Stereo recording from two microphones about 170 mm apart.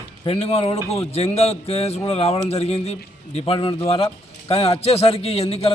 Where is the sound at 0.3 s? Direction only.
35° left (ahead or behind).